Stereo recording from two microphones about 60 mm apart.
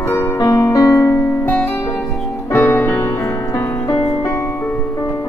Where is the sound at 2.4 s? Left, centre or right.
Left.